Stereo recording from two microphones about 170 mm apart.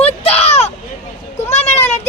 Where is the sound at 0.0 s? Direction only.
35° left (ahead or behind).